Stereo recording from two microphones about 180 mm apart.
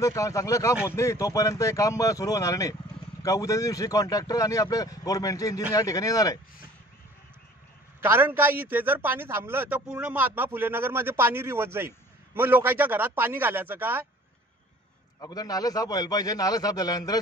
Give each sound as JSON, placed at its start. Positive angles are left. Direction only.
{"t": 0.0, "sound": "speech", "side_deg": 15}
{"t": 8.0, "sound": "a man's voice", "side_deg": -10}
{"t": 15.1, "sound": "speech", "side_deg": 20}